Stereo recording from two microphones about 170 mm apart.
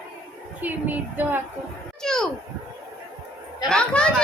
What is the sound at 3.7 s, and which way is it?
Speech, 5° left (ahead or behind).